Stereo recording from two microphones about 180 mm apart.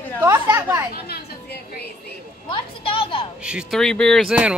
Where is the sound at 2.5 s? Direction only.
30° left (ahead or behind).